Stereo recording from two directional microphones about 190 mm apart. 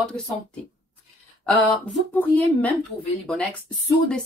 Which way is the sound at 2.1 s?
10° left (ahead or behind).